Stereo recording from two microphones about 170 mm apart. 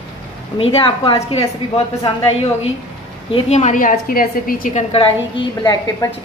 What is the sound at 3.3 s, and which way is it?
A woman's voice, 35° left (ahead or behind).